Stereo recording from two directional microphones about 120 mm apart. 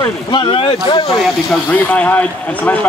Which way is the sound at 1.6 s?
15° left (ahead or behind).